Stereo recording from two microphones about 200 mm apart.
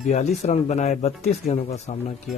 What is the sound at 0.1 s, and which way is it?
Speech, 35° left (ahead or behind).